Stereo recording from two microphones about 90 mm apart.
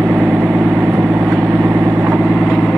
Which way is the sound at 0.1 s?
20° right (ahead or behind).